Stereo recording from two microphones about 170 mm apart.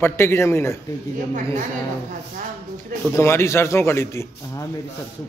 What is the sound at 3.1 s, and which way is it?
Speech, 15° left (ahead or behind).